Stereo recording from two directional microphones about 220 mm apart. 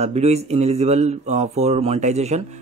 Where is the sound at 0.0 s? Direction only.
30° right (ahead or behind).